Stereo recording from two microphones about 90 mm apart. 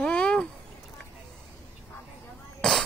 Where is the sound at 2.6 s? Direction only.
5° left (ahead or behind).